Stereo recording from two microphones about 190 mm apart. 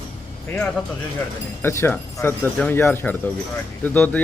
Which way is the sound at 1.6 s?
15° left (ahead or behind).